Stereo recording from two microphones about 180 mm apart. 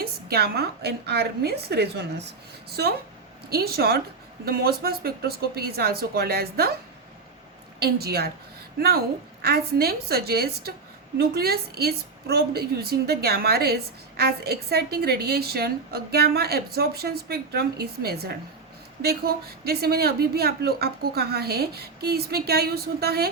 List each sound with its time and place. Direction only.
0.0 s a woman's voice: 60° right (ahead or behind)
7.8 s a woman's voice: 60° right (ahead or behind)